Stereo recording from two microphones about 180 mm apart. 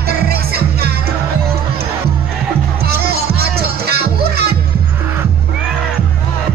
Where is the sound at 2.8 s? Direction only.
60° right (ahead or behind).